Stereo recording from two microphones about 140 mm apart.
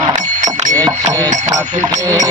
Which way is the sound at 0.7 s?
25° right (ahead or behind).